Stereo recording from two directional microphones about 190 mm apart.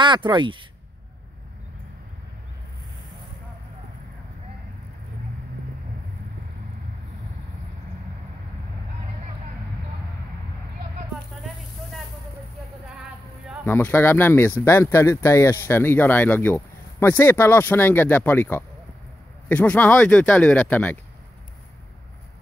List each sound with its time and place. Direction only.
0.0 s speech: 25° right (ahead or behind)
13.7 s speech: 10° left (ahead or behind)